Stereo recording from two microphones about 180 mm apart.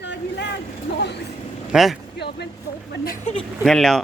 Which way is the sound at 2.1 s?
70° left (ahead or behind).